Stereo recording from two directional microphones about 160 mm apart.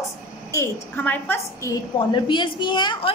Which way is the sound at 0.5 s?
15° left (ahead or behind).